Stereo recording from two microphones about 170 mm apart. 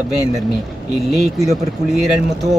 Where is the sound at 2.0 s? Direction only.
Centre (ahead or behind).